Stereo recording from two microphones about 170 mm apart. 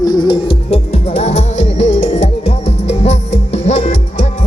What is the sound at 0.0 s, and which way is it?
Music, 25° left (ahead or behind).